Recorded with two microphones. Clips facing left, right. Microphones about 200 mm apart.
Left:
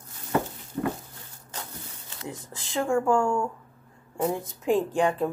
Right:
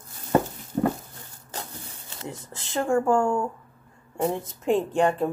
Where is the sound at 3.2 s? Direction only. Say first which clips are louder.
Right 1 dB; 20° right (ahead or behind).